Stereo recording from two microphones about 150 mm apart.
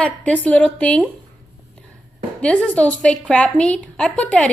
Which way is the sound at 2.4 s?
10° left (ahead or behind).